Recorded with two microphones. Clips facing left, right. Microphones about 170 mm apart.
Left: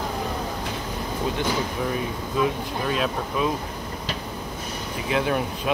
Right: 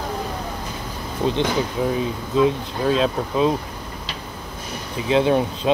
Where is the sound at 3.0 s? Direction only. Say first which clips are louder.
Right 5 dB; 25° right (ahead or behind).